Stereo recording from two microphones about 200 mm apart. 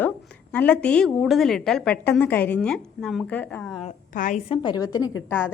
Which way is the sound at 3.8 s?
40° left (ahead or behind).